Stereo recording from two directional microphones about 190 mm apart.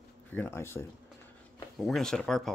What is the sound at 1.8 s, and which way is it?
Speech, centre (ahead or behind).